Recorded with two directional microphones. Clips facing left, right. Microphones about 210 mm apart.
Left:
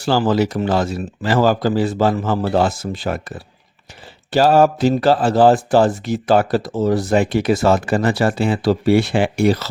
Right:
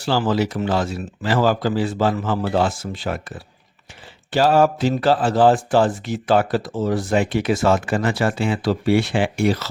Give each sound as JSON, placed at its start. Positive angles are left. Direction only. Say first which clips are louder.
{"t": 0.0, "sound": "speech", "louder": "left 3 dB", "side_deg": 45}